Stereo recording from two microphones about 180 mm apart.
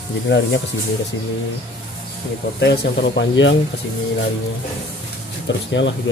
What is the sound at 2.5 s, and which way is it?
Speech, 70° left (ahead or behind).